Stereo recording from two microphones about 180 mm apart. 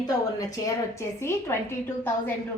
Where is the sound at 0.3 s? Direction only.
20° left (ahead or behind).